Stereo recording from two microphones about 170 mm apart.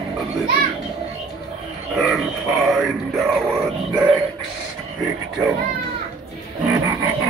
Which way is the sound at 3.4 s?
10° right (ahead or behind).